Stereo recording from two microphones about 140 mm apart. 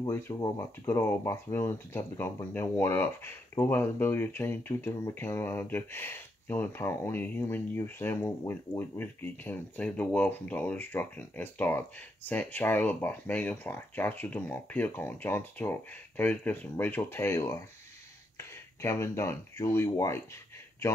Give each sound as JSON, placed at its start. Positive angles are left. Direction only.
{"t": 0.0, "sound": "speech", "side_deg": 25}